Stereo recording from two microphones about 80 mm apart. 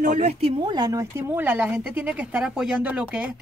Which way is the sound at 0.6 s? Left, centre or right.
Right.